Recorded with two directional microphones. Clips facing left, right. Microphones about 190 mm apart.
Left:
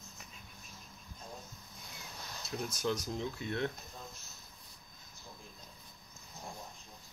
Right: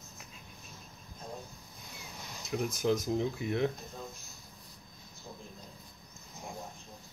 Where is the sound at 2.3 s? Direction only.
15° right (ahead or behind).